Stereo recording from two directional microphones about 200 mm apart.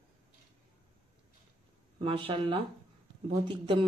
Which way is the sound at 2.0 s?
25° right (ahead or behind).